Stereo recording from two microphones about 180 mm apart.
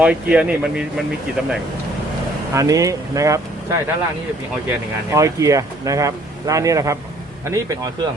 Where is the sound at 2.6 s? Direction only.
20° right (ahead or behind).